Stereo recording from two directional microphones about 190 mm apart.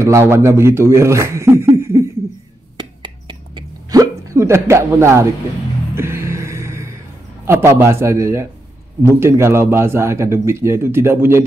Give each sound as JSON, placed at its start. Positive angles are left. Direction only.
{"t": 0.0, "sound": "speech", "side_deg": -15}
{"t": 2.8, "sound": "hiccup", "side_deg": -25}
{"t": 5.9, "sound": "music", "side_deg": -15}
{"t": 7.4, "sound": "speech", "side_deg": -15}